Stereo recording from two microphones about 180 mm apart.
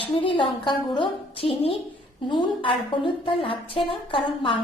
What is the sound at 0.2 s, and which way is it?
A woman's voice, 25° left (ahead or behind).